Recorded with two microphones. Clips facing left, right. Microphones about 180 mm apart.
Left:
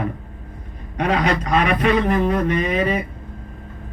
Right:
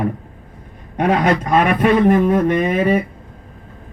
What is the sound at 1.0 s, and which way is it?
A man's voice, 55° right (ahead or behind).